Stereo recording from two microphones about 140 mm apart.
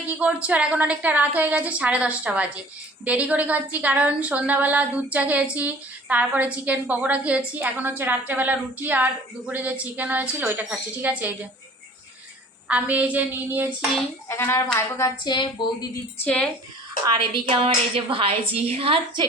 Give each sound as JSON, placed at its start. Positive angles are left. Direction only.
{"t": 0.2, "sound": "a woman's voice", "side_deg": -10}
{"t": 12.6, "sound": "a woman's voice", "side_deg": -10}
{"t": 14.3, "sound": "speech", "side_deg": 15}
{"t": 15.2, "sound": "speech", "side_deg": 35}
{"t": 16.2, "sound": "speech", "side_deg": 10}
{"t": 17.1, "sound": "a woman's voice", "side_deg": -35}